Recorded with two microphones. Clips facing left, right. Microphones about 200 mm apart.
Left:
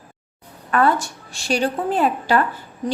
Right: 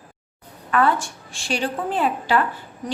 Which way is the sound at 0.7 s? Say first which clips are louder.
Left 2 dB; 40° left (ahead or behind).